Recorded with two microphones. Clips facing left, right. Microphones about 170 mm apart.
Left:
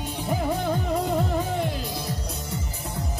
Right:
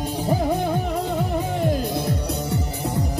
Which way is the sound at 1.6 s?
50° right (ahead or behind).